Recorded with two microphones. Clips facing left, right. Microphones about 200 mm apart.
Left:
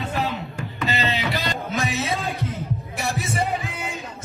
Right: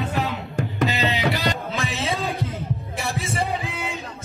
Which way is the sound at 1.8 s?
30° right (ahead or behind).